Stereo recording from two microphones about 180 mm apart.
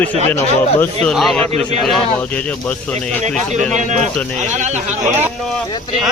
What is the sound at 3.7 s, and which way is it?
Speech, 45° right (ahead or behind).